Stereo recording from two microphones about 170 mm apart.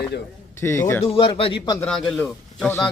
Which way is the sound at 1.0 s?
30° left (ahead or behind).